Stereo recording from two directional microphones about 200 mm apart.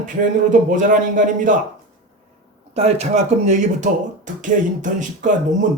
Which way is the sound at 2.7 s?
30° right (ahead or behind).